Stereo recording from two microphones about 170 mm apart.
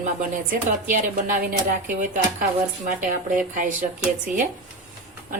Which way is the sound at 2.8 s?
50° right (ahead or behind).